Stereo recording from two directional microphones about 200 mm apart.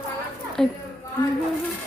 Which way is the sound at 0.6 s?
Centre (ahead or behind).